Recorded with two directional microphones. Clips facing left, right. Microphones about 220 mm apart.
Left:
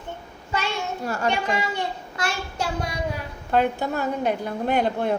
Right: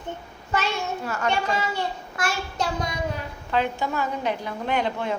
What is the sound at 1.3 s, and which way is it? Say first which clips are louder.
Speech: right 1 dB; 15° left (ahead or behind).